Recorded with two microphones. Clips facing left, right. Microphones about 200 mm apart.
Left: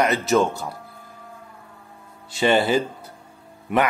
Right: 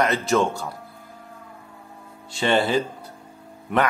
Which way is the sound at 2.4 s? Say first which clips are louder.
Left 2 dB; 5° left (ahead or behind).